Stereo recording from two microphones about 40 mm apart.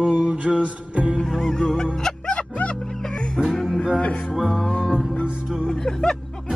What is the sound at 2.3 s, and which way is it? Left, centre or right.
Music, left.